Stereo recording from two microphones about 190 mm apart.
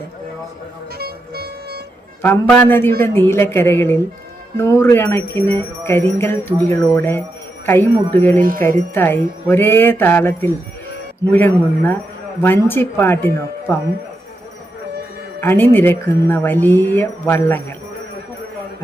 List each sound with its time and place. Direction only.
0.9 s music: 55° right (ahead or behind)
2.2 s speech: 10° left (ahead or behind)
8.4 s jingle bell: 50° right (ahead or behind)
8.9 s speech: 10° left (ahead or behind)
15.4 s speech: 10° left (ahead or behind)